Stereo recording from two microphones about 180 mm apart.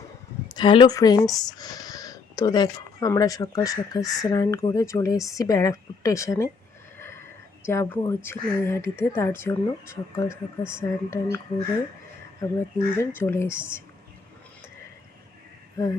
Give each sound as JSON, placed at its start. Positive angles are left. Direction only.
{"t": 0.4, "sound": "speech", "side_deg": 25}
{"t": 12.4, "sound": "speech", "side_deg": 15}
{"t": 15.8, "sound": "speech", "side_deg": 20}